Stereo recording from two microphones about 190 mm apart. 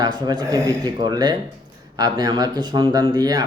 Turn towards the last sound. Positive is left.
turn(degrees=-20)  # may be behind; listen again after turning